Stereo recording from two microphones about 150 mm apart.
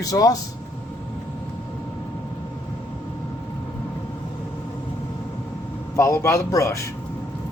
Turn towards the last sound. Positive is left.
turn(degrees=20)  # may be behind; listen again after turning